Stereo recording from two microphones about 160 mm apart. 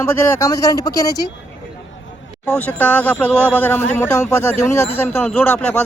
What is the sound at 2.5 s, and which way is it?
Speech, 10° left (ahead or behind).